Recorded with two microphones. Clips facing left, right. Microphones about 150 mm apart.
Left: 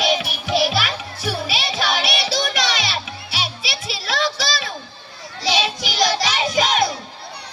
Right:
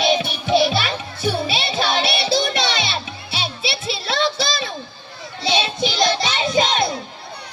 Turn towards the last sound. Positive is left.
turn(degrees=-25)  # may be behind; listen again after turning